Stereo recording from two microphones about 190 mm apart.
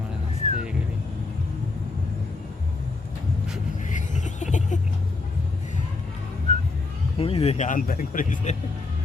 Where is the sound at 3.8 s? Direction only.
40° left (ahead or behind).